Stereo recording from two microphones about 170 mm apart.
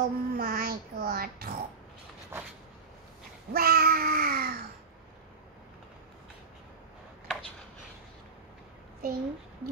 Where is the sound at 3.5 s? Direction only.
65° right (ahead or behind).